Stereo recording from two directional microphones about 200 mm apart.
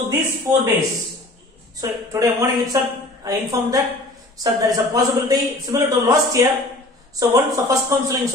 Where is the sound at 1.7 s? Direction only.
15° right (ahead or behind).